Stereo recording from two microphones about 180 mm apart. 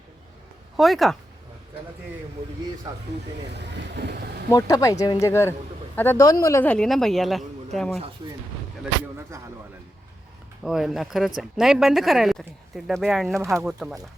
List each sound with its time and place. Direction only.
0.8 s speech: centre (ahead or behind)
2.4 s speech: 20° right (ahead or behind)
3.5 s speech: 70° right (ahead or behind)
4.5 s speech: 20° left (ahead or behind); by 7.9 s centre (ahead or behind)
9.3 s speech: 15° right (ahead or behind)
10.6 s speech: centre (ahead or behind)
13.2 s speech: 15° right (ahead or behind)
13.5 s speech: centre (ahead or behind)